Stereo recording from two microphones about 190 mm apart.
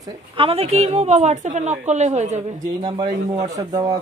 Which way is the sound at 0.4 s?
30° right (ahead or behind).